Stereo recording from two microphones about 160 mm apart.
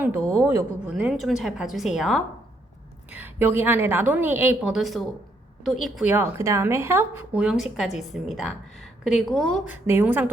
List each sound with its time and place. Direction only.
0.0 s a woman's voice: 10° right (ahead or behind)
3.1 s a woman's voice: 10° right (ahead or behind)
6.1 s a woman's voice: 15° right (ahead or behind)
7.4 s a woman's voice: centre (ahead or behind)
9.6 s a woman's voice: 15° right (ahead or behind)